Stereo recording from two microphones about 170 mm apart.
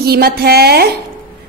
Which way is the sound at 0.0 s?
65° right (ahead or behind).